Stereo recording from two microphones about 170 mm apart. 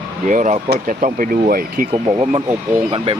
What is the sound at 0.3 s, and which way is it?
Speech, 45° right (ahead or behind).